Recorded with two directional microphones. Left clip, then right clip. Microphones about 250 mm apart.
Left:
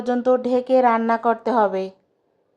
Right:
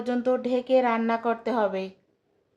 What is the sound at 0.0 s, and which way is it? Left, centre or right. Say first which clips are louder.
Speech: left 6 dB; centre.